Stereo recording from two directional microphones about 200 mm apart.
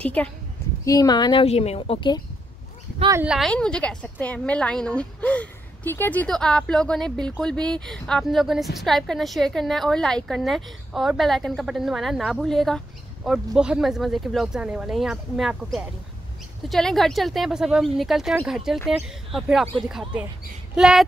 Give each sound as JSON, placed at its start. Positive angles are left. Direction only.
{"t": 0.0, "sound": "a woman's voice", "side_deg": 5}
{"t": 0.8, "sound": "a woman's voice", "side_deg": 20}
{"t": 3.1, "sound": "speech", "side_deg": -10}
{"t": 3.3, "sound": "speech", "side_deg": 5}